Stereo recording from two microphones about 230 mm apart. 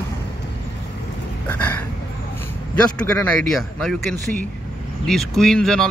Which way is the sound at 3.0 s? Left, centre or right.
Centre.